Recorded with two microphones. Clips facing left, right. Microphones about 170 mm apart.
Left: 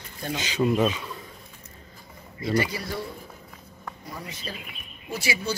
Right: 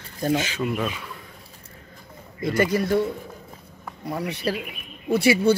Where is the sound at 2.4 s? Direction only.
50° right (ahead or behind).